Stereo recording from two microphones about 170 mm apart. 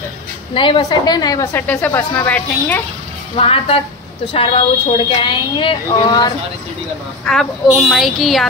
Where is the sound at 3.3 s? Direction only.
35° left (ahead or behind).